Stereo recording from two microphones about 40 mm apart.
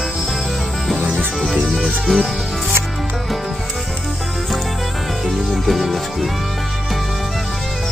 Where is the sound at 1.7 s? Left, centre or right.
Centre.